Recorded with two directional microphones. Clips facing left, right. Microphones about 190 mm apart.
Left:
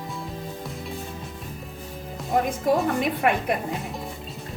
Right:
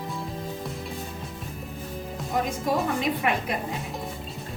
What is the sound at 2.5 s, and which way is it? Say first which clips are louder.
Speech: left 3 dB; 55° left (ahead or behind).